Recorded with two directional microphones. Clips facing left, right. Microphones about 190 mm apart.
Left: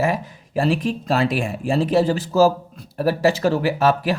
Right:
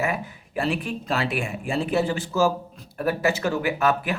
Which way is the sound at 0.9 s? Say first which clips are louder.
Left 6 dB; 35° left (ahead or behind).